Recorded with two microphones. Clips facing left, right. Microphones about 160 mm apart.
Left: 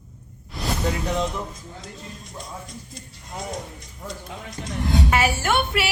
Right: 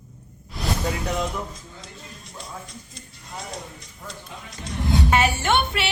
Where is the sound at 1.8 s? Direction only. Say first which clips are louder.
Left 4 dB; 50° left (ahead or behind).